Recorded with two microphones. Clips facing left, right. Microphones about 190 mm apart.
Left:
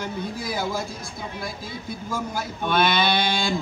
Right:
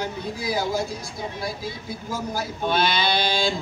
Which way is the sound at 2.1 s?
55° left (ahead or behind).